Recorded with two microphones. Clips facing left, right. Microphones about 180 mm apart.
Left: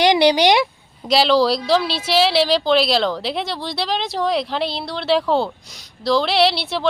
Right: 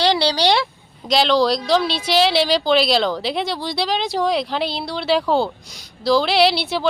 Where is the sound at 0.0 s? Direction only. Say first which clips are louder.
Left 4 dB; 15° left (ahead or behind).